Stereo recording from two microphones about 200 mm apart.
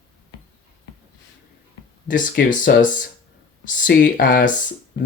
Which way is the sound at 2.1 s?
40° left (ahead or behind).